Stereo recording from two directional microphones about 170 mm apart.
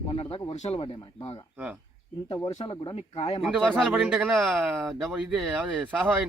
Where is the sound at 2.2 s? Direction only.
20° left (ahead or behind); by 3.4 s 35° left (ahead or behind).